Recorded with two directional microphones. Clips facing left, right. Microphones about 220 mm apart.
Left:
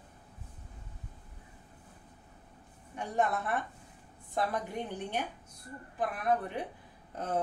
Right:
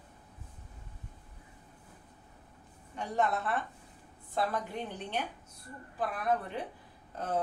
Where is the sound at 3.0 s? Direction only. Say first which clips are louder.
Even; 15° left (ahead or behind).